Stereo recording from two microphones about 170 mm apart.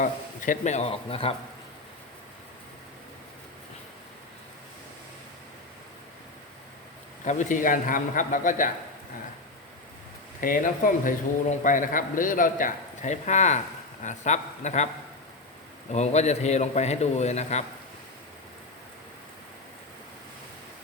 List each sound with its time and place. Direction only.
0.0 s a man's voice: 50° left (ahead or behind); by 1.4 s 35° left (ahead or behind)
7.3 s a man's voice: 45° left (ahead or behind)
10.4 s a man's voice: 50° left (ahead or behind)
15.9 s a man's voice: 40° left (ahead or behind)